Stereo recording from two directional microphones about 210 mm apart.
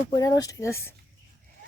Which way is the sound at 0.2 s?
15° left (ahead or behind).